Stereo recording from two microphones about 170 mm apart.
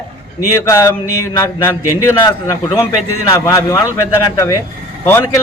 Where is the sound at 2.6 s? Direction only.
30° left (ahead or behind).